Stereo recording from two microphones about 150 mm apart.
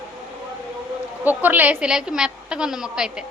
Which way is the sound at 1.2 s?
10° right (ahead or behind).